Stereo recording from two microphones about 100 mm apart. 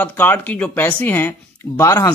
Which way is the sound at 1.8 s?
30° left (ahead or behind).